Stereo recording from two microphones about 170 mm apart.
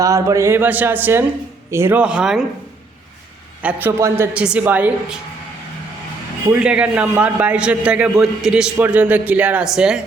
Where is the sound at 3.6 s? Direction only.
10° right (ahead or behind).